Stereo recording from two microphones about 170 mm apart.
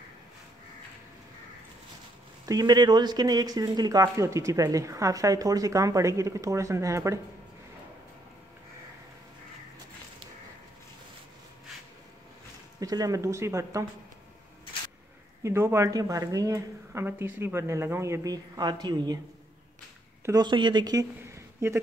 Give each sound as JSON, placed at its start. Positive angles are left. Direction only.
{"t": 2.4, "sound": "speech", "side_deg": -25}
{"t": 12.8, "sound": "speech", "side_deg": -20}
{"t": 15.4, "sound": "a woman's voice", "side_deg": -15}
{"t": 20.2, "sound": "speech", "side_deg": -25}